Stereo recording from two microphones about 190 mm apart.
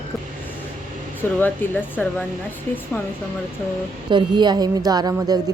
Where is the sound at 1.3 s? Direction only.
10° left (ahead or behind).